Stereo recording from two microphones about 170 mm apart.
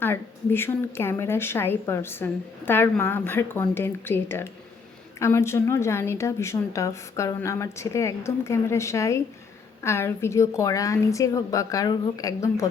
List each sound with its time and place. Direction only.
0.0 s a woman's voice: 15° left (ahead or behind)